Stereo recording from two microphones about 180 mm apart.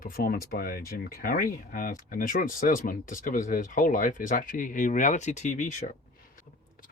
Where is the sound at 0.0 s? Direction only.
55° left (ahead or behind).